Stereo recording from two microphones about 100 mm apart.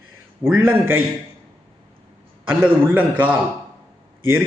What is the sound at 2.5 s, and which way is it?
Speech, 20° right (ahead or behind).